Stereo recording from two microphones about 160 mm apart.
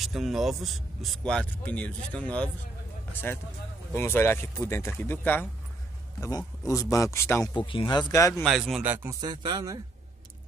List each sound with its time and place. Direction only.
0.0 s a man's voice: centre (ahead or behind)
6.7 s a man's voice: 20° left (ahead or behind)
7.5 s a man's voice: 30° left (ahead or behind)
8.5 s a man's voice: centre (ahead or behind)
8.8 s speech: 10° right (ahead or behind)
9.2 s speech: 30° right (ahead or behind)